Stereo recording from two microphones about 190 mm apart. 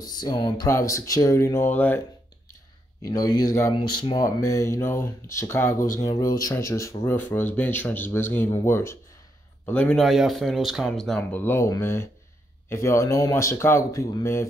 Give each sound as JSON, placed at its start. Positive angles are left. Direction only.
{"t": 0.0, "sound": "speech", "side_deg": 20}
{"t": 3.0, "sound": "speech", "side_deg": 20}